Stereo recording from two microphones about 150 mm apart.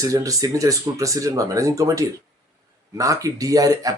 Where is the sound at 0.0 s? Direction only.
20° right (ahead or behind).